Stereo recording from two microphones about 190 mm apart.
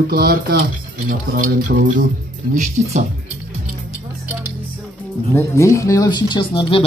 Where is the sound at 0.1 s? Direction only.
55° right (ahead or behind).